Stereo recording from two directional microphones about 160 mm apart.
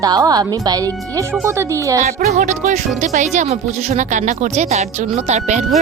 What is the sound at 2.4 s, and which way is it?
Speech, 50° right (ahead or behind).